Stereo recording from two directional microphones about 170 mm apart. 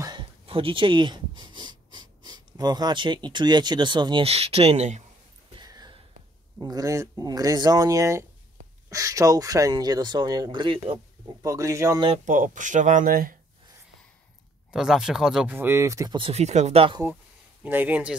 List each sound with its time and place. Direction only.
0.0 s speech: 25° right (ahead or behind)
5.6 s a sound: 25° right (ahead or behind)
6.6 s speech: 20° right (ahead or behind)
11.4 s speech: 20° right (ahead or behind)
12.3 s speech: 50° right (ahead or behind)
14.7 s speech: 5° right (ahead or behind); by 16.2 s 20° right (ahead or behind)
16.2 s speech: 40° right (ahead or behind)
17.6 s speech: 10° right (ahead or behind)